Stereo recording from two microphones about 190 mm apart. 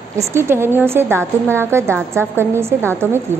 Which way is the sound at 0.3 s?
15° right (ahead or behind).